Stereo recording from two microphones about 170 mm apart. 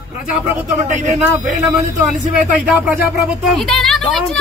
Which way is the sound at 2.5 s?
5° right (ahead or behind).